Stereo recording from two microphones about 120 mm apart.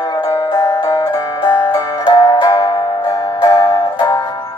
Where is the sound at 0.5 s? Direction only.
40° left (ahead or behind).